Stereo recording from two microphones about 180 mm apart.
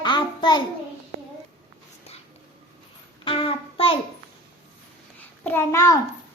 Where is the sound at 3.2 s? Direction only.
30° left (ahead or behind).